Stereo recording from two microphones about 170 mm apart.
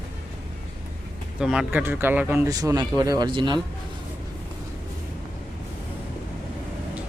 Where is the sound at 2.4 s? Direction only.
20° right (ahead or behind).